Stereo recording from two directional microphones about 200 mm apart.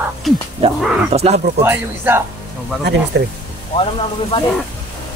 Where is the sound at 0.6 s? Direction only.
30° right (ahead or behind).